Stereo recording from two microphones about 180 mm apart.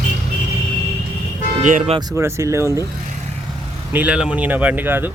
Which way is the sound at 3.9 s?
10° right (ahead or behind).